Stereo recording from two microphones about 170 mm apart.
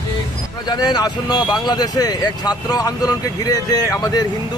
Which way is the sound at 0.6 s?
25° left (ahead or behind).